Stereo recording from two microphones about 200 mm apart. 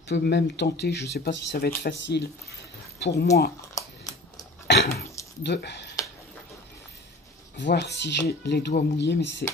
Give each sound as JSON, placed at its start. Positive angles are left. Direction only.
{"t": 0.1, "sound": "speech", "side_deg": 60}
{"t": 4.6, "sound": "a sound", "side_deg": 55}
{"t": 5.4, "sound": "speech", "side_deg": 60}
{"t": 7.5, "sound": "speech", "side_deg": 60}